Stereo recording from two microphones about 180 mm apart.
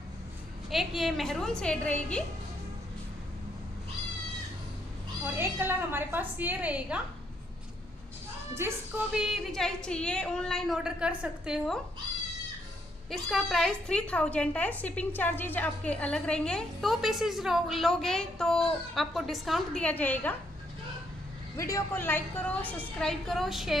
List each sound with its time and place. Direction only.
0.7 s a woman's voice: centre (ahead or behind)
5.2 s a woman's voice: 10° right (ahead or behind)
8.5 s a woman's voice: 10° right (ahead or behind)
13.1 s a woman's voice: centre (ahead or behind)
21.5 s a woman's voice: 15° left (ahead or behind); by 23.8 s centre (ahead or behind)